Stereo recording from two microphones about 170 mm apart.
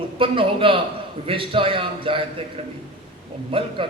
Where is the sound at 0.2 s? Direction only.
30° right (ahead or behind).